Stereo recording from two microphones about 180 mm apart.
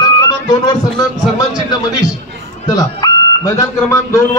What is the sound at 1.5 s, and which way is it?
A man's voice, 20° left (ahead or behind).